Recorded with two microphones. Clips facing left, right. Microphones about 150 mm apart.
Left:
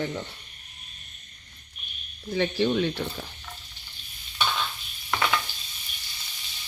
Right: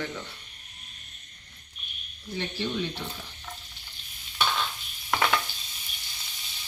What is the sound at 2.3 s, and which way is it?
Speech, 65° left (ahead or behind).